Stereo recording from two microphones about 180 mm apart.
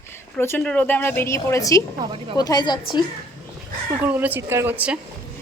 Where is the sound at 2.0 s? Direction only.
20° right (ahead or behind).